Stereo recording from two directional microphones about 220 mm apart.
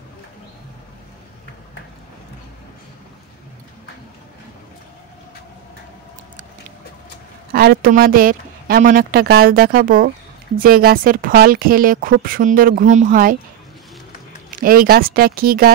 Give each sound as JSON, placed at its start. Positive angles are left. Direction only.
{"t": 7.5, "sound": "speech", "side_deg": -45}
{"t": 14.5, "sound": "speech", "side_deg": -40}